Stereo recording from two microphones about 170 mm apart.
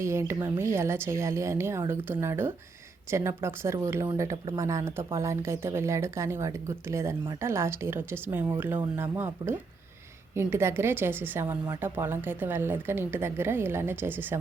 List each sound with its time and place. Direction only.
0.0 s speech: 15° right (ahead or behind)